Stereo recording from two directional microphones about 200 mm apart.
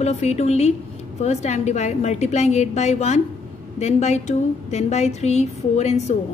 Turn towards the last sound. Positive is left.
turn(degrees=35)  # may be behind; listen again after turning